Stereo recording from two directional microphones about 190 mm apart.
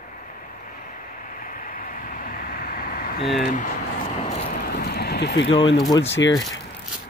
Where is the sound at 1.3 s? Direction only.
45° left (ahead or behind).